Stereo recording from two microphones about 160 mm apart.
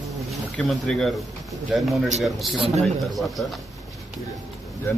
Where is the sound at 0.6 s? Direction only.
5° left (ahead or behind).